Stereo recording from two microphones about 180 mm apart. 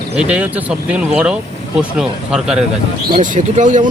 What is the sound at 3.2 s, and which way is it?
Speech, 45° right (ahead or behind).